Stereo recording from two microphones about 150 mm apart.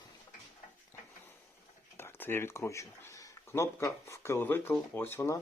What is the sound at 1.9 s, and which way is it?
Speech, 15° left (ahead or behind).